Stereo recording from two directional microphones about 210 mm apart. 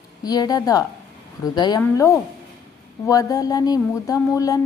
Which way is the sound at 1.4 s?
20° left (ahead or behind).